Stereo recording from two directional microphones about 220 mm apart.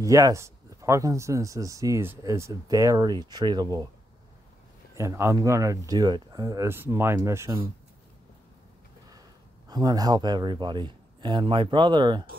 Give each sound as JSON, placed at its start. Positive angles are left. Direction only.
{"t": 0.0, "sound": "speech", "side_deg": -15}
{"t": 4.9, "sound": "speech", "side_deg": -10}
{"t": 9.7, "sound": "a man's voice", "side_deg": -20}